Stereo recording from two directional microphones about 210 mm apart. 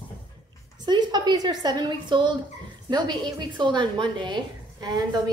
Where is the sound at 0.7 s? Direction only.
20° right (ahead or behind).